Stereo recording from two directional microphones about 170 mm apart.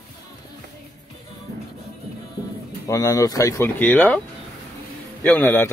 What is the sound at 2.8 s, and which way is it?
Speech, 20° left (ahead or behind).